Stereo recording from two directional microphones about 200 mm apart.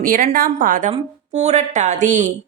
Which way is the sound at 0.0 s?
40° right (ahead or behind).